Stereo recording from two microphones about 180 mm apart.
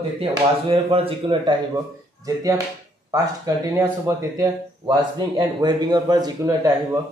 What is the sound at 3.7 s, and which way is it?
Speech, 15° right (ahead or behind).